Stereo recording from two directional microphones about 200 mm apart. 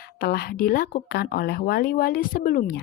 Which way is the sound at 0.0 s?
50° left (ahead or behind).